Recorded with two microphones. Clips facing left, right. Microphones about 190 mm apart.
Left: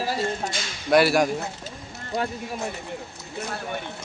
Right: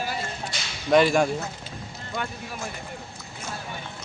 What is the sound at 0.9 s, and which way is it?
Speech, 10° left (ahead or behind).